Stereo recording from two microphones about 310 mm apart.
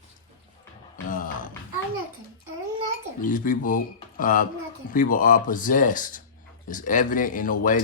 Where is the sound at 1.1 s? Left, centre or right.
Left.